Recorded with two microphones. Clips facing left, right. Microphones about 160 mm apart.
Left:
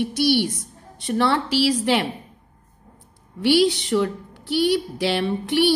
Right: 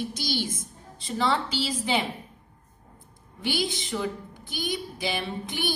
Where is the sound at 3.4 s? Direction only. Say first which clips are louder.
Left 12 dB; 70° left (ahead or behind).